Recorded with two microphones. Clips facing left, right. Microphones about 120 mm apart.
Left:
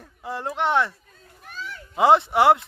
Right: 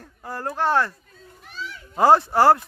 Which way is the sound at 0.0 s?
Centre (ahead or behind).